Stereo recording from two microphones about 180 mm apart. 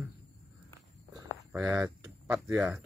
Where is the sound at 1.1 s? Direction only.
15° right (ahead or behind).